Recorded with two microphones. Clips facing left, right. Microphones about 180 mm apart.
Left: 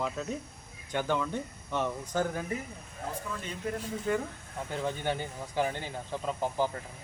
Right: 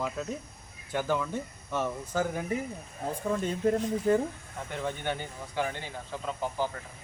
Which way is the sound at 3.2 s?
50° right (ahead or behind).